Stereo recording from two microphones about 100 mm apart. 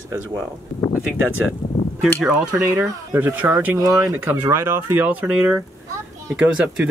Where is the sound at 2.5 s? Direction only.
25° right (ahead or behind).